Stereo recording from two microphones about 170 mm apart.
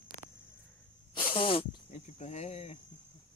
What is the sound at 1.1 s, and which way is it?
Snake, 30° left (ahead or behind).